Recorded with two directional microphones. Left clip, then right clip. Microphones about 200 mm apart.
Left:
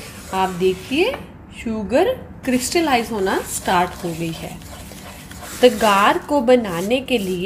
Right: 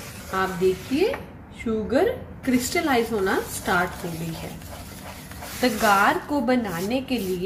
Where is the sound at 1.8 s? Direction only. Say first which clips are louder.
Left 6 dB; 40° left (ahead or behind).